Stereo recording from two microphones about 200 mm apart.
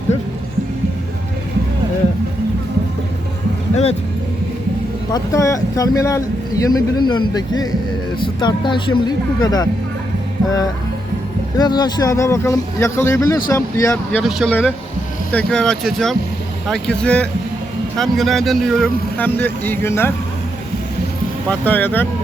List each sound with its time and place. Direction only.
5.1 s speech: 15° left (ahead or behind)
11.5 s speech: 20° left (ahead or behind)
21.5 s speech: 10° left (ahead or behind)